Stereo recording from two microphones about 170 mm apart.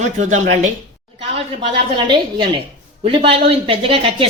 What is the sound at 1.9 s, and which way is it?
A woman's voice, 30° right (ahead or behind).